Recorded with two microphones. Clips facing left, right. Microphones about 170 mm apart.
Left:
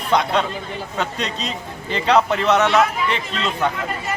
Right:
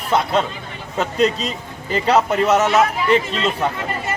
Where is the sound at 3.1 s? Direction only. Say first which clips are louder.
Right 7 dB; 35° right (ahead or behind).